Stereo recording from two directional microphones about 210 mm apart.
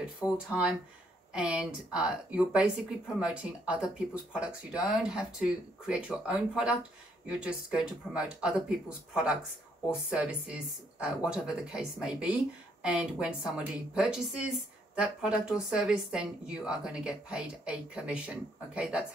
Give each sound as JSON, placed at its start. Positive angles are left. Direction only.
{"t": 0.0, "sound": "speech", "side_deg": -5}